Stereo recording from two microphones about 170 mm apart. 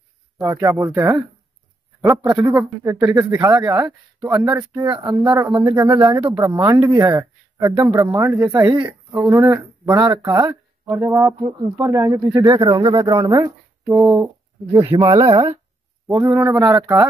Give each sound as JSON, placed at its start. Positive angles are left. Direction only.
{"t": 0.4, "sound": "speech", "side_deg": -15}
{"t": 14.9, "sound": "speech", "side_deg": -35}
{"t": 15.1, "sound": "speech", "side_deg": -20}